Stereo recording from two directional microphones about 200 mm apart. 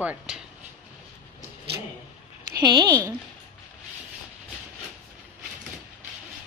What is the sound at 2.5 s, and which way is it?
Speech, 20° right (ahead or behind).